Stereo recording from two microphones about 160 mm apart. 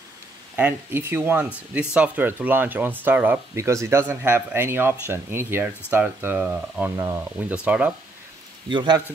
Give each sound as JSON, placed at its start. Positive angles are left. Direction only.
{"t": 0.6, "sound": "speech", "side_deg": -15}
{"t": 8.6, "sound": "a man's voice", "side_deg": -30}